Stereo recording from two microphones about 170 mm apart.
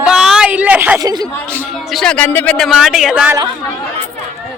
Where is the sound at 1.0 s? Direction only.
20° right (ahead or behind).